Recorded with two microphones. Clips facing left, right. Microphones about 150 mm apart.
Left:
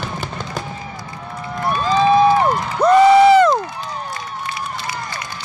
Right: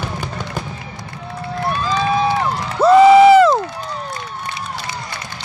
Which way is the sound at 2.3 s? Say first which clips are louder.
Left 4 dB; 50° left (ahead or behind).